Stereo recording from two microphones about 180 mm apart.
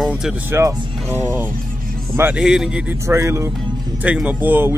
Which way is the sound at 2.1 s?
10° right (ahead or behind).